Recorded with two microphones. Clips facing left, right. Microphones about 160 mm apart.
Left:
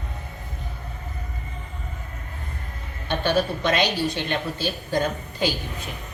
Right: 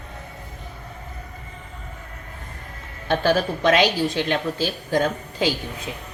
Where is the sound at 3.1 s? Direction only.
90° right.